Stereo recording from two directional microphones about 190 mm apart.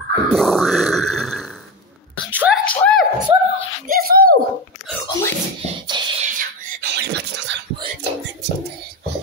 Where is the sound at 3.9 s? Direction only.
50° right (ahead or behind).